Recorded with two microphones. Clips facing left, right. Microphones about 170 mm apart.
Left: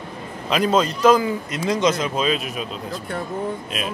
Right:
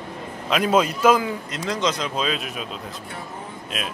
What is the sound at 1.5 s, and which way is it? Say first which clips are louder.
Speech: left 5 dB; 10° left (ahead or behind).